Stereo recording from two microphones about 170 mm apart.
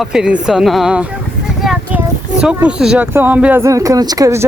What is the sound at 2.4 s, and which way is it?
Speech, 5° right (ahead or behind).